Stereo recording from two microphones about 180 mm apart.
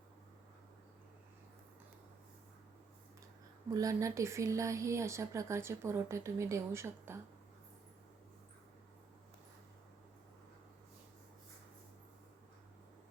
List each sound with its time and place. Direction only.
3.8 s a woman's voice: 20° right (ahead or behind)